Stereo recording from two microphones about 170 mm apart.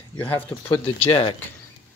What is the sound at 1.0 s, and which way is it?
Speech, 30° left (ahead or behind).